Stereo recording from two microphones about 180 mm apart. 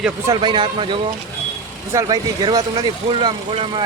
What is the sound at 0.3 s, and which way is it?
Speech, 25° right (ahead or behind).